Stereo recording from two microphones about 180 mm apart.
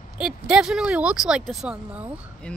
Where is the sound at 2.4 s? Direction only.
5° left (ahead or behind).